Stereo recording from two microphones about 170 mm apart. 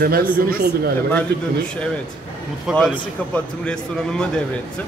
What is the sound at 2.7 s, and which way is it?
A man's voice, 5° right (ahead or behind).